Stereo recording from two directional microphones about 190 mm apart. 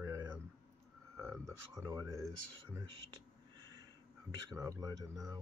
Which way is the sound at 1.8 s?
15° right (ahead or behind).